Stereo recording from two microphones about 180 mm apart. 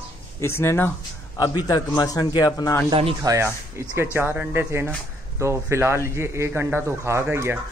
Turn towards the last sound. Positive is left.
turn(degrees=-10)  # may be behind; listen again after turning